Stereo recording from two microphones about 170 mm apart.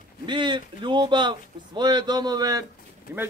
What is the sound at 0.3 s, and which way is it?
A man's voice, 25° right (ahead or behind).